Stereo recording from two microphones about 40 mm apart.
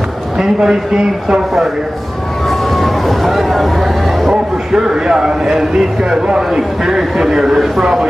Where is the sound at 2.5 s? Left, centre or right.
Centre.